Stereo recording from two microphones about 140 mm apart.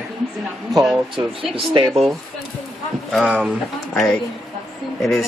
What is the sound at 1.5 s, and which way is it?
Speech, 40° right (ahead or behind).